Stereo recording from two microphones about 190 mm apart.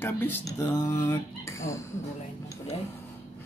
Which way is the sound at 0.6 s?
20° left (ahead or behind).